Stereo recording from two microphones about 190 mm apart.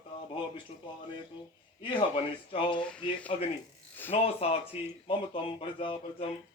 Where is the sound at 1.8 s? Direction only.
25° left (ahead or behind).